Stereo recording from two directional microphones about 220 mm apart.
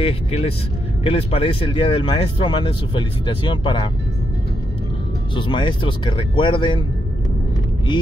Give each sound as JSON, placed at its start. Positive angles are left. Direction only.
{"t": 0.0, "sound": "speech", "side_deg": 25}
{"t": 5.3, "sound": "speech", "side_deg": 20}